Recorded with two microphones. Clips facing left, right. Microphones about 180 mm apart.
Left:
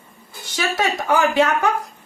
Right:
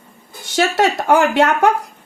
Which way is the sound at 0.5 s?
65° right (ahead or behind).